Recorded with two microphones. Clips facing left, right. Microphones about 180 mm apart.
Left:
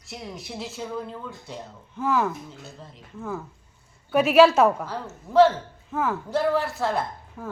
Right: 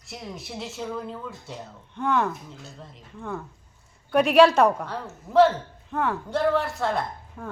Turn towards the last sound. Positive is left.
turn(degrees=0)  # may be behind; listen again after turning